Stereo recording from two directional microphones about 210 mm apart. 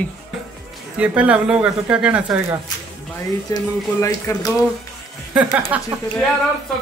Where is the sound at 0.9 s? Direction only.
5° right (ahead or behind).